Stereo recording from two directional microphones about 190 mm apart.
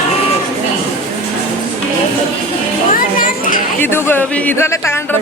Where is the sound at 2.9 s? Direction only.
45° left (ahead or behind).